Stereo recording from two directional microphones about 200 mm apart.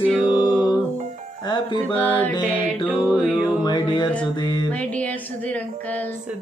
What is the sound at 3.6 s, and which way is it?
Music, 20° left (ahead or behind).